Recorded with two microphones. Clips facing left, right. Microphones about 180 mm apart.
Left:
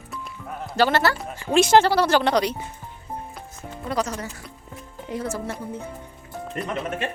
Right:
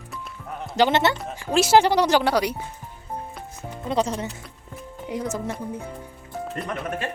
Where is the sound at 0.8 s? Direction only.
20° right (ahead or behind).